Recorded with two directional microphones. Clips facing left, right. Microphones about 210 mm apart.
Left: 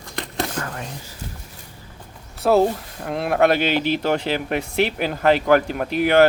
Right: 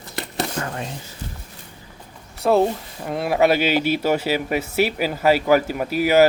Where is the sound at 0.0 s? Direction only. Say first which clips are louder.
Even; 5° right (ahead or behind).